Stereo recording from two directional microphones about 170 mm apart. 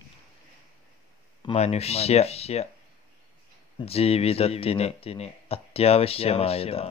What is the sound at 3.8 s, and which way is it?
Speech, 35° left (ahead or behind).